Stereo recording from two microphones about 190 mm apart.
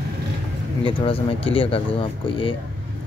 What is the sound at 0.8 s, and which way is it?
Speech, 30° left (ahead or behind).